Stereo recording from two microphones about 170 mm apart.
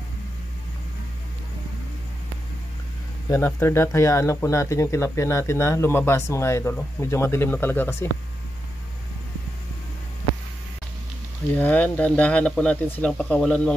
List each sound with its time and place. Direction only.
3.3 s speech: 15° left (ahead or behind)
11.5 s speech: 10° left (ahead or behind)